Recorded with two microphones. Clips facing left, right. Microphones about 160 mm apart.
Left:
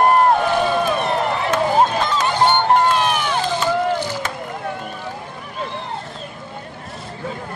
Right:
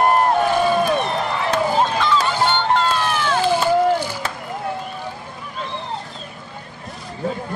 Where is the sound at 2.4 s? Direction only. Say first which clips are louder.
Left 3 dB; 15° left (ahead or behind).